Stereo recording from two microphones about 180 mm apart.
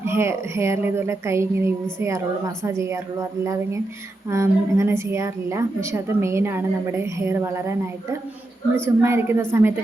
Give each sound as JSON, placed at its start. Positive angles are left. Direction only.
{"t": 0.0, "sound": "a woman's voice", "side_deg": -15}